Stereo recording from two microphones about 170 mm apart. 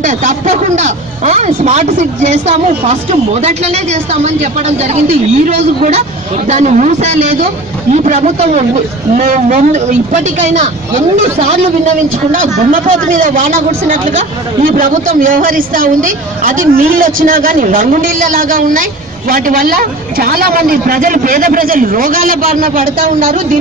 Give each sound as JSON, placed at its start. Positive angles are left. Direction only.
{"t": 0.0, "sound": "speech", "side_deg": -50}
{"t": 12.3, "sound": "speech", "side_deg": -50}